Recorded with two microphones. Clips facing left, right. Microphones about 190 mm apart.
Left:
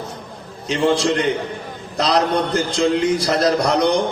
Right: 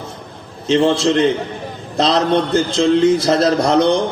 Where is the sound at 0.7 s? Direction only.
30° right (ahead or behind).